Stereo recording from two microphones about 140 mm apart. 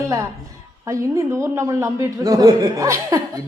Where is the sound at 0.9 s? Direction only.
20° right (ahead or behind).